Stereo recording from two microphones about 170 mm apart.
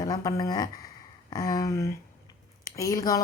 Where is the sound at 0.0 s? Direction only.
20° left (ahead or behind).